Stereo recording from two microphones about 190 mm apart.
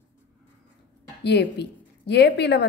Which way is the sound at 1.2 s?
60° left (ahead or behind).